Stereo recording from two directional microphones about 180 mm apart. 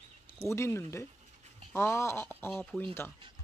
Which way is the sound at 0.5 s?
15° left (ahead or behind).